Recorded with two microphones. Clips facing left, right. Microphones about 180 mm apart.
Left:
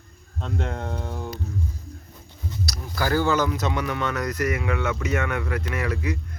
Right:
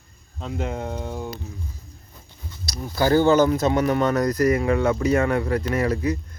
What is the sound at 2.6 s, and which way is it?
Speech, 25° right (ahead or behind).